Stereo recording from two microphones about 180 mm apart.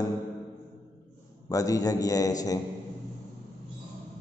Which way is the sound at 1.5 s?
20° left (ahead or behind).